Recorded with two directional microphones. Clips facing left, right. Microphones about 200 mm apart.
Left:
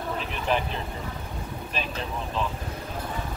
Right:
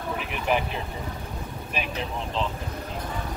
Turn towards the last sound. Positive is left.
turn(degrees=-15)  # may be behind; listen again after turning